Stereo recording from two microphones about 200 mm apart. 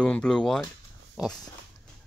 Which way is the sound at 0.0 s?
5° left (ahead or behind).